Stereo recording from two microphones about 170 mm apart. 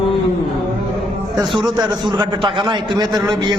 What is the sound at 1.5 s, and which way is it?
Speech, centre (ahead or behind).